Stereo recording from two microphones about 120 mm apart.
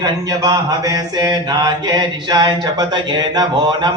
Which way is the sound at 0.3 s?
30° right (ahead or behind).